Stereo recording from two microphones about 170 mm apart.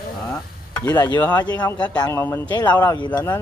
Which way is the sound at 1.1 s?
10° left (ahead or behind).